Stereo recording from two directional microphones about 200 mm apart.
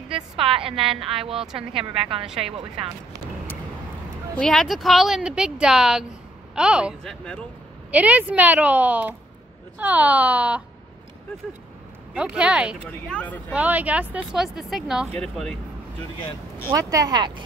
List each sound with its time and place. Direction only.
0.4 s a woman's voice: 30° right (ahead or behind)
4.4 s speech: centre (ahead or behind)
12.1 s speech: 5° right (ahead or behind)
13.1 s speech: 10° left (ahead or behind)
13.5 s speech: 5° right (ahead or behind)
16.6 s speech: 15° right (ahead or behind)